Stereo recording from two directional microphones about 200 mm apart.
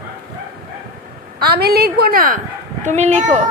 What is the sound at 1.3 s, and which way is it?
A woman's voice, 50° right (ahead or behind).